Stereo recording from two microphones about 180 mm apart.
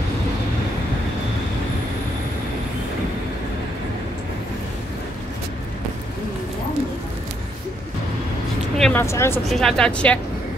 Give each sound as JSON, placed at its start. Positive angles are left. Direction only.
{"t": 8.7, "sound": "vehicle", "side_deg": 0}
{"t": 9.0, "sound": "speech", "side_deg": 15}
{"t": 9.5, "sound": "speech", "side_deg": 0}